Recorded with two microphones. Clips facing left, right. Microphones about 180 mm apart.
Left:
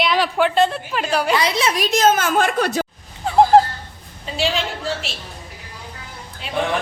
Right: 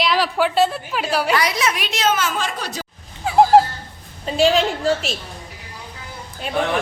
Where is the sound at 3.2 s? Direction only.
5° right (ahead or behind).